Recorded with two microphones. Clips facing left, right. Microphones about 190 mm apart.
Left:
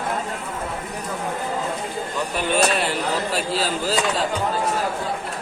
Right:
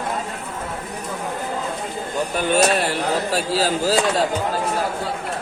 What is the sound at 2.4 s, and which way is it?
A man's voice, 45° right (ahead or behind).